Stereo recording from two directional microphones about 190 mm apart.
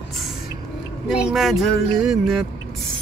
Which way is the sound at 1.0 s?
5° right (ahead or behind).